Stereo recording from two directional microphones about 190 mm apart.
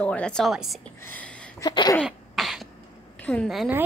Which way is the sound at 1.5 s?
20° left (ahead or behind).